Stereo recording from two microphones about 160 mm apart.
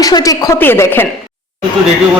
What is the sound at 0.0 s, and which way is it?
Speech, 20° left (ahead or behind).